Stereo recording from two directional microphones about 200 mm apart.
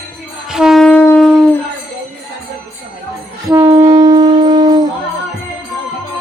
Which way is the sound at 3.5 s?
20° right (ahead or behind).